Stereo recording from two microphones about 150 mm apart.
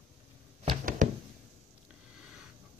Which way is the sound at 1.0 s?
55° right (ahead or behind).